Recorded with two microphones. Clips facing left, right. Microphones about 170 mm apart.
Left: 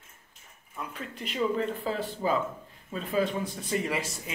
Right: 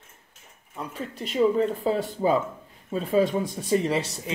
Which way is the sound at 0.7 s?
40° right (ahead or behind).